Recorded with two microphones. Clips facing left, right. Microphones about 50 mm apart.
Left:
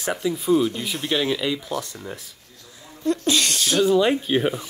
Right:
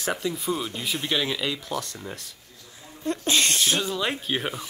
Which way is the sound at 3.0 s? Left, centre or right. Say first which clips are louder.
Left 3 dB; right.